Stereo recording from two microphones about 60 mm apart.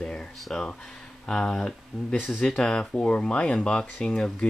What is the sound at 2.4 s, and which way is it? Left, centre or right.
A child's voice, centre.